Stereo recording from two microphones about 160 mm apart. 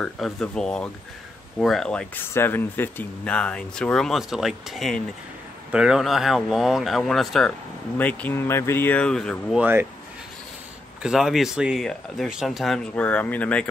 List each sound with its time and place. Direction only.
0.0 s speech: 5° left (ahead or behind)
9.6 s speech: 15° right (ahead or behind)
11.0 s speech: 5° right (ahead or behind)